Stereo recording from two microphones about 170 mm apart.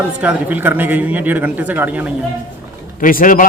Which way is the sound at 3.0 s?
55° left (ahead or behind).